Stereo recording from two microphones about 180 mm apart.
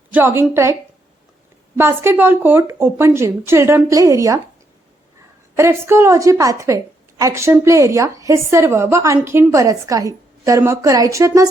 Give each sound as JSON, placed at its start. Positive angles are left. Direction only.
{"t": 0.1, "sound": "a woman's voice", "side_deg": -10}
{"t": 5.5, "sound": "a woman's voice", "side_deg": -15}